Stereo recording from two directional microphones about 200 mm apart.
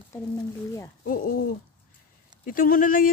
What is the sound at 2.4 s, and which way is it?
Speech, 45° left (ahead or behind).